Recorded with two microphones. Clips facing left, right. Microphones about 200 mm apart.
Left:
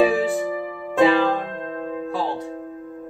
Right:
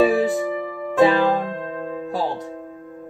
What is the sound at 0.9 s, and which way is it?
Music, 40° right (ahead or behind).